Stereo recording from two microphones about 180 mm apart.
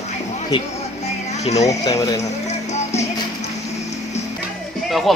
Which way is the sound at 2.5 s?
40° left (ahead or behind).